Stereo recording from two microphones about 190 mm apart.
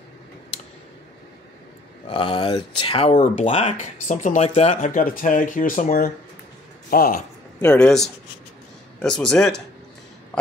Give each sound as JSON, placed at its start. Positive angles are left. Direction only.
{"t": 2.0, "sound": "speech", "side_deg": 25}
{"t": 3.2, "sound": "speech", "side_deg": 40}
{"t": 7.6, "sound": "a man's voice", "side_deg": 5}